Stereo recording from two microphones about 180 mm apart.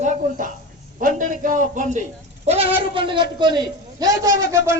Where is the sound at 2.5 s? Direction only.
30° right (ahead or behind); by 4.8 s 15° right (ahead or behind).